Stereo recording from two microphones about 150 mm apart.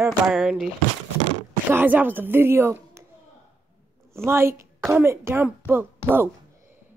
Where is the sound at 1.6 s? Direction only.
10° right (ahead or behind).